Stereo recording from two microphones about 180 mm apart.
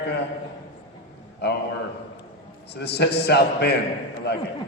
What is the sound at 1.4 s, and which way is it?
Speech, 70° left (ahead or behind).